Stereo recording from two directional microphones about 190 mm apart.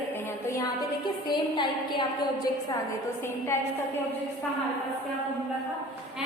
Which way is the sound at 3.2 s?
15° left (ahead or behind).